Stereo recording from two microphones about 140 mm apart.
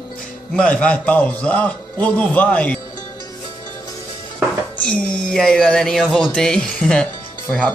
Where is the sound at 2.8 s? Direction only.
25° left (ahead or behind).